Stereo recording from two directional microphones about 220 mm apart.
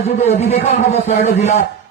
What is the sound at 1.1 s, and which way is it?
Speech, 45° left (ahead or behind).